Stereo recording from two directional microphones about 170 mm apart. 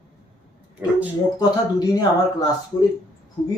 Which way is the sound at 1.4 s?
25° left (ahead or behind).